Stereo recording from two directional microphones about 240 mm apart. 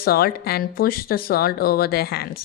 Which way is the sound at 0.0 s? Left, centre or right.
Left.